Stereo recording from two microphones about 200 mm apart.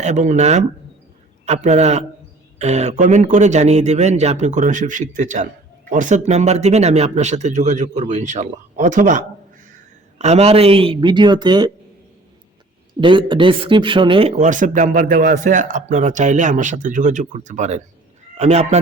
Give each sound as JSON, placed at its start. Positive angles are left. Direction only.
{"t": 0.0, "sound": "speech", "side_deg": -35}
{"t": 13.0, "sound": "speech", "side_deg": -25}